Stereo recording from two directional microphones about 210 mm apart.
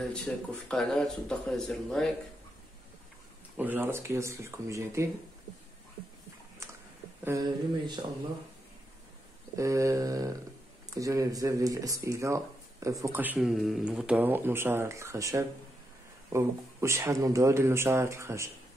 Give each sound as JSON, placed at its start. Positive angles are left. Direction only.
{"t": 0.0, "sound": "speech", "side_deg": 5}
{"t": 3.5, "sound": "speech", "side_deg": -10}
{"t": 7.2, "sound": "speech", "side_deg": -20}
{"t": 9.6, "sound": "speech", "side_deg": -15}